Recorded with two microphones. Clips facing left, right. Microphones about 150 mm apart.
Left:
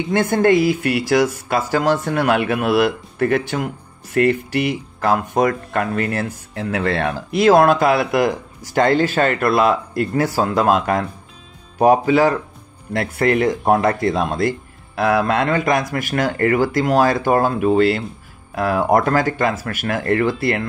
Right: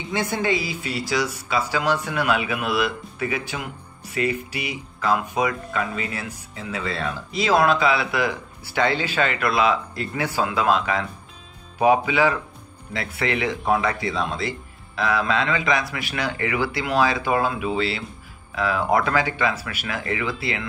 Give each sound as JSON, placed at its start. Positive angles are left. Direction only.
{"t": 0.1, "sound": "speech", "side_deg": 55}